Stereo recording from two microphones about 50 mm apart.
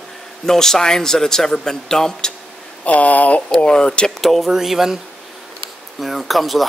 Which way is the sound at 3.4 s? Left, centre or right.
Centre.